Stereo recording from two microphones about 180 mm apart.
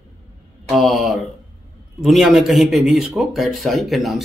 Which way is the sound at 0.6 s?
Centre (ahead or behind).